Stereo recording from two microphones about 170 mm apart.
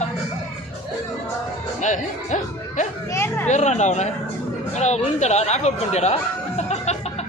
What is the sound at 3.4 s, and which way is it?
Speech, 45° left (ahead or behind).